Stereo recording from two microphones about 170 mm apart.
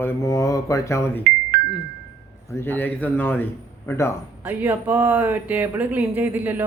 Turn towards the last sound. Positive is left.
turn(degrees=-10)  # may be behind; listen again after turning